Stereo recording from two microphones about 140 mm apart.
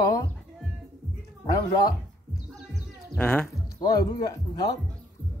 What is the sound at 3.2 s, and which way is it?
Speech, 10° left (ahead or behind).